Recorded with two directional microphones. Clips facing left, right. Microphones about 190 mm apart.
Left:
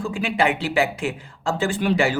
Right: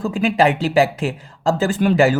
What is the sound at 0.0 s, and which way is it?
Speech, 40° right (ahead or behind).